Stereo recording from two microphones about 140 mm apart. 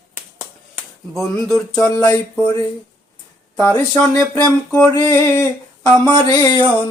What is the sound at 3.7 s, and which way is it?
Speech, 10° left (ahead or behind).